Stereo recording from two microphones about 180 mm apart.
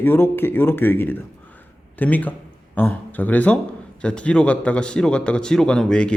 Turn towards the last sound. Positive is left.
turn(degrees=5)  # may be behind; listen again after turning